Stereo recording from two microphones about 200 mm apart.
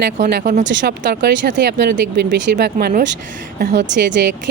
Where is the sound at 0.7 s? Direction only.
60° right (ahead or behind).